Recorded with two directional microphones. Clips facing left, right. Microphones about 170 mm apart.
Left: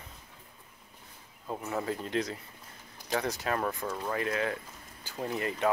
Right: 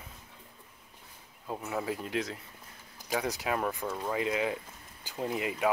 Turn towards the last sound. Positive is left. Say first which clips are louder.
# even
turn(degrees=-10)  # may be behind; listen again after turning